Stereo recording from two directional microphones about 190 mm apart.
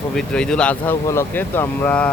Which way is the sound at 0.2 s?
5° left (ahead or behind).